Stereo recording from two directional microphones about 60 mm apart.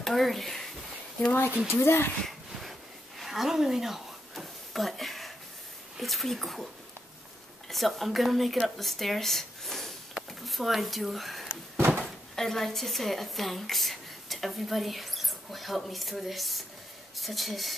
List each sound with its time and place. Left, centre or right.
0.0 s speech: centre
1.7 s speech: left
3.2 s a sound: centre
5.9 s speech: centre
7.7 s speech: centre